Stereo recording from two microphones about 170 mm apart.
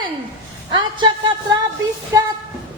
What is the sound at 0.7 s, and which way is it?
Speech, 25° right (ahead or behind).